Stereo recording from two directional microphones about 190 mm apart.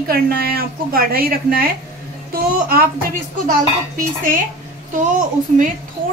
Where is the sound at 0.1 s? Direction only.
50° right (ahead or behind).